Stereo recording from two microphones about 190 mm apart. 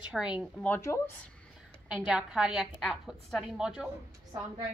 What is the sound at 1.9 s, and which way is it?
A woman's voice, 5° right (ahead or behind).